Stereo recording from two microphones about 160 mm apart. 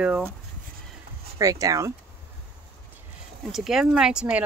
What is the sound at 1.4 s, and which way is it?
Speech, 20° right (ahead or behind).